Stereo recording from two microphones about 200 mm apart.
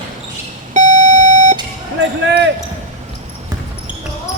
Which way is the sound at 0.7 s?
35° right (ahead or behind).